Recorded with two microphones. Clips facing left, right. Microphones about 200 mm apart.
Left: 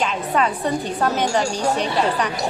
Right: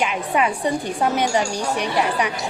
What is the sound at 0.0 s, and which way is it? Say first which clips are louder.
Speech: even; 10° right (ahead or behind).